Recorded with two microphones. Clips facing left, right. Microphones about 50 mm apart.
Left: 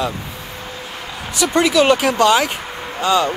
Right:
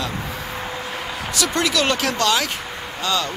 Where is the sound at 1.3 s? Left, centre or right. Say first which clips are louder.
Left 7 dB; centre.